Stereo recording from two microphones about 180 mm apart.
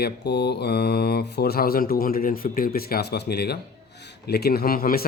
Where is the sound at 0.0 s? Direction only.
65° left (ahead or behind).